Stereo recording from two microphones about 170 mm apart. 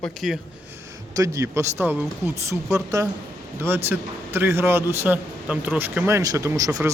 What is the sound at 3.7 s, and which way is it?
Speech, 15° right (ahead or behind).